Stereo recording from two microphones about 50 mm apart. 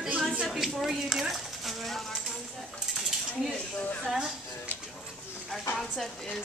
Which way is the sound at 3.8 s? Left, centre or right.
Left.